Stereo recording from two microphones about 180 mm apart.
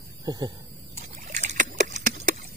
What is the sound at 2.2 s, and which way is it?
Clip-clop, 45° right (ahead or behind).